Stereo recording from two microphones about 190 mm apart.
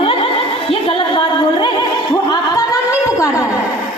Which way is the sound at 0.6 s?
30° left (ahead or behind).